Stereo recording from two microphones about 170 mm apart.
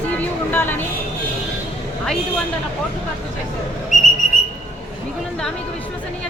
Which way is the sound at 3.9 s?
45° left (ahead or behind).